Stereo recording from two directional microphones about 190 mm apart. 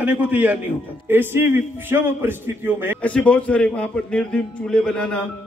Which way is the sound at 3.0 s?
5° left (ahead or behind).